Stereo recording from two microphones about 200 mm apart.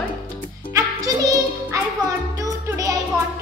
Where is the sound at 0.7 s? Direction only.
15° right (ahead or behind).